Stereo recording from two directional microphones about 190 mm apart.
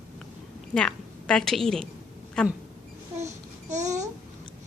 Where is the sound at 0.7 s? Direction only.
5° left (ahead or behind).